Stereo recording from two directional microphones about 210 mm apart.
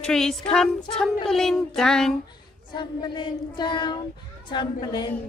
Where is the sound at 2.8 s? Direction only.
20° left (ahead or behind).